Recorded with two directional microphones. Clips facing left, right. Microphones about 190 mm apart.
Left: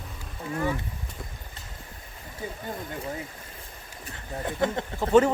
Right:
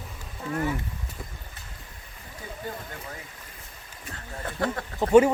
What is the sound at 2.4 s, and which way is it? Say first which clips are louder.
Speech: left 5 dB; 20° left (ahead or behind).